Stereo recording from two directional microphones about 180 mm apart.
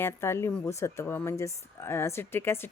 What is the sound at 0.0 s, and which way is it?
A woman's voice, 15° left (ahead or behind).